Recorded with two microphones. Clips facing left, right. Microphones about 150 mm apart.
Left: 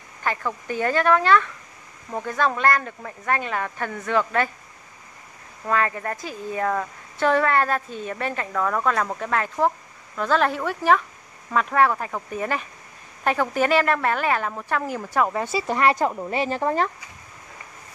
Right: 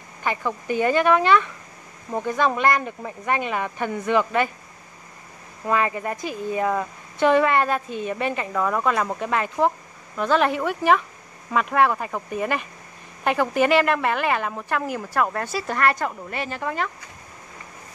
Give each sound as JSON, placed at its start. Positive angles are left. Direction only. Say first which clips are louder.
{"t": 0.2, "sound": "a sound", "louder": "right 1 dB", "side_deg": -10}
{"t": 0.7, "sound": "speech", "louder": "right 2 dB", "side_deg": -10}
{"t": 5.7, "sound": "speech", "louder": "right 1 dB", "side_deg": -10}
{"t": 16.1, "sound": "speech", "louder": "left 5 dB", "side_deg": 25}